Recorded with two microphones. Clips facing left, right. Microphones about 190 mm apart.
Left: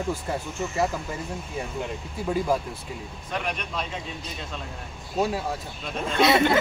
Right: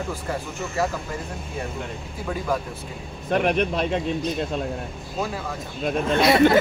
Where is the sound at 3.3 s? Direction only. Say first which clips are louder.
Right 10 dB; 55° right (ahead or behind).